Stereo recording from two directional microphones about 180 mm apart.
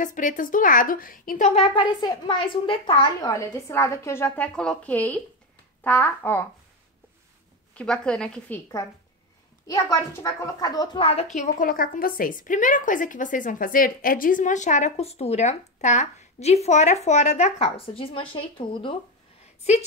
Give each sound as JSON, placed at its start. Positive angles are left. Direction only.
{"t": 0.0, "sound": "a woman's voice", "side_deg": 45}
{"t": 1.5, "sound": "speech", "side_deg": 30}
{"t": 7.7, "sound": "a woman's voice", "side_deg": 5}
{"t": 9.7, "sound": "speech", "side_deg": 20}
{"t": 11.3, "sound": "a woman's voice", "side_deg": 45}